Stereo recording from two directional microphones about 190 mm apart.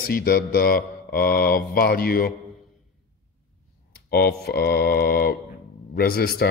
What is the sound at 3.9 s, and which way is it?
Speech, 55° left (ahead or behind).